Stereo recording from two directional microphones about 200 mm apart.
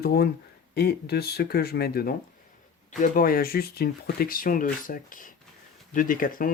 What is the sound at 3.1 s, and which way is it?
Speech, 45° left (ahead or behind).